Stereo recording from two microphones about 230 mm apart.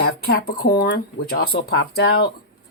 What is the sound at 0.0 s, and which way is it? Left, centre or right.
Speech, left.